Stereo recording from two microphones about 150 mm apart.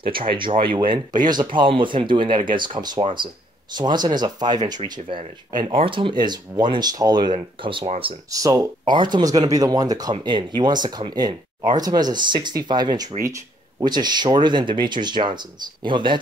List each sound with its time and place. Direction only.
0.0 s speech: 35° right (ahead or behind)
8.3 s speech: 25° right (ahead or behind)